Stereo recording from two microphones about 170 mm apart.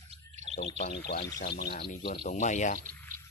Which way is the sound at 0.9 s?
75° left (ahead or behind).